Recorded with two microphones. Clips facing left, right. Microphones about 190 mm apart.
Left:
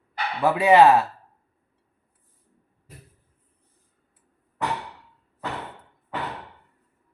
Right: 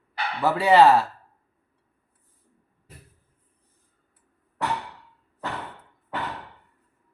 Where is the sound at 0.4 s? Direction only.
15° left (ahead or behind).